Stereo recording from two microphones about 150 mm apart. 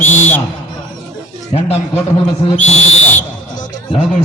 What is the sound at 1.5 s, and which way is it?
Whistle, 45° left (ahead or behind).